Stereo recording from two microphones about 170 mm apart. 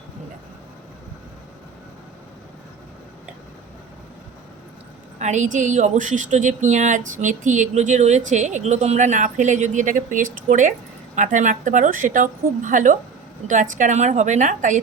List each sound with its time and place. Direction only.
5.2 s speech: 45° right (ahead or behind)